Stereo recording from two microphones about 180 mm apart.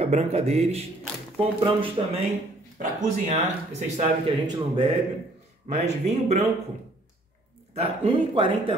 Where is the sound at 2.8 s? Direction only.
40° right (ahead or behind).